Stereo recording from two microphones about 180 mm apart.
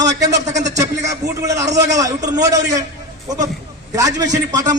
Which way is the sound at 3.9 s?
20° right (ahead or behind).